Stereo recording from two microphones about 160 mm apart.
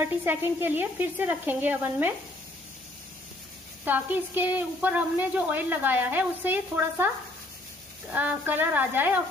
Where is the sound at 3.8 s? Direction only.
10° right (ahead or behind).